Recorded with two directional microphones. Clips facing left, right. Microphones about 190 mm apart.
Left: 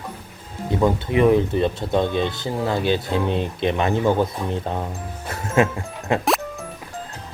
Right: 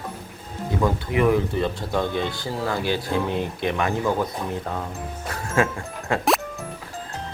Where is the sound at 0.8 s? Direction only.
20° left (ahead or behind).